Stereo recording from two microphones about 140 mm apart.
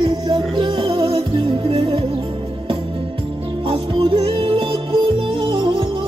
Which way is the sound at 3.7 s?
40° right (ahead or behind).